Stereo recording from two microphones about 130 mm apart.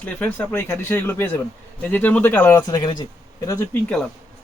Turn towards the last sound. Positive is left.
turn(degrees=15)  # may be behind; listen again after turning